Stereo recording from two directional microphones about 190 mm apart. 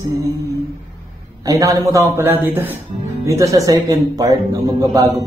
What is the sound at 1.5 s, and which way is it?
Speech, 15° right (ahead or behind).